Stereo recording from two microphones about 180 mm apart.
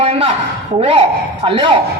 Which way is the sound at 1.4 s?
30° right (ahead or behind).